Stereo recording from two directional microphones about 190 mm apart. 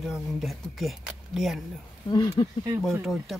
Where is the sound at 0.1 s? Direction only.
Centre (ahead or behind).